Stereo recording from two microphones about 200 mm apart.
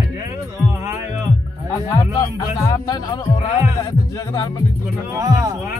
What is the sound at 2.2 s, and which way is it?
Speech, 20° left (ahead or behind).